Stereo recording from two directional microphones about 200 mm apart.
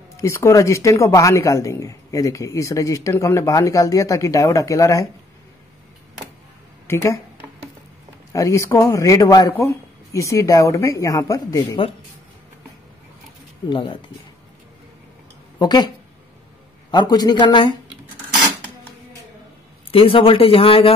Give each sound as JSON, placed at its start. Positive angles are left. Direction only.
{"t": 0.2, "sound": "speech", "side_deg": 15}
{"t": 6.9, "sound": "speech", "side_deg": 15}
{"t": 8.3, "sound": "speech", "side_deg": 15}
{"t": 13.7, "sound": "speech", "side_deg": 25}
{"t": 15.6, "sound": "speech", "side_deg": 20}
{"t": 16.9, "sound": "speech", "side_deg": 20}
{"t": 19.9, "sound": "speech", "side_deg": 25}